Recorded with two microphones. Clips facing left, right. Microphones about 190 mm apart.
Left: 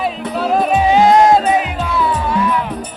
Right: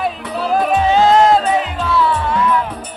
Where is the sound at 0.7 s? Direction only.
10° left (ahead or behind).